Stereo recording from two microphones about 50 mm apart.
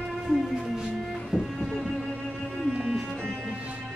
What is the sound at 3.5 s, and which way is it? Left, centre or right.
Music, right.